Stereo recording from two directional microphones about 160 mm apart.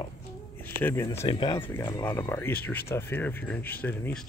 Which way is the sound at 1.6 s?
15° left (ahead or behind).